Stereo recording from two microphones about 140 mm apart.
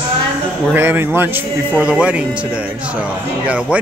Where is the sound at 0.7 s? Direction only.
15° right (ahead or behind).